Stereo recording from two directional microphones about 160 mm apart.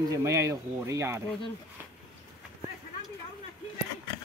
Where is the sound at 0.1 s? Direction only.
20° right (ahead or behind).